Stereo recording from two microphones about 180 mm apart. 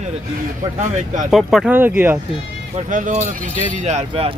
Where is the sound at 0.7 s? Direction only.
45° right (ahead or behind).